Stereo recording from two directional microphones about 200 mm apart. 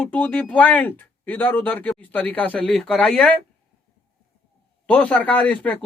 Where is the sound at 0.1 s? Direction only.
10° left (ahead or behind).